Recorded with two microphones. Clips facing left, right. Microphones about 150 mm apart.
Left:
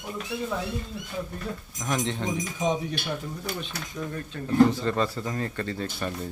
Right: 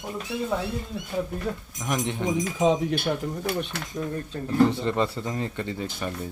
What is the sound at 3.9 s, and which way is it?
Speech, 25° right (ahead or behind).